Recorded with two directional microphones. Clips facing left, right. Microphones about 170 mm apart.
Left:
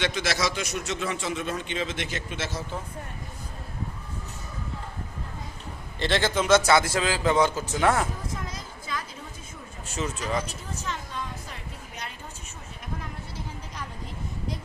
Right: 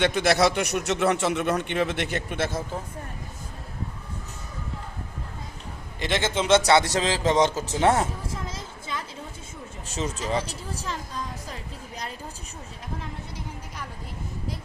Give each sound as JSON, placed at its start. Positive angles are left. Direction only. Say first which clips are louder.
{"t": 0.0, "sound": "a man's voice", "louder": "right 7 dB", "side_deg": -55}
{"t": 6.0, "sound": "a man's voice", "louder": "left 1 dB", "side_deg": -20}